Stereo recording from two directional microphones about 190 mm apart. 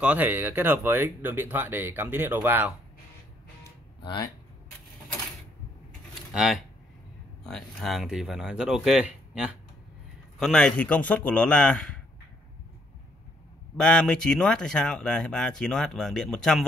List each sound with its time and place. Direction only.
0.0 s speech: 10° right (ahead or behind)
4.0 s speech: 25° left (ahead or behind)
6.3 s speech: 5° right (ahead or behind)
13.7 s speech: 5° left (ahead or behind)